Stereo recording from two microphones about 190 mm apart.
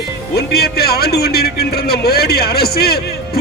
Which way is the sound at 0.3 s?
55° left (ahead or behind).